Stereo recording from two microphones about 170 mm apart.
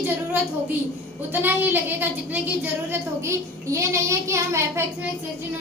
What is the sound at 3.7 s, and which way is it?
A woman's voice, 20° right (ahead or behind).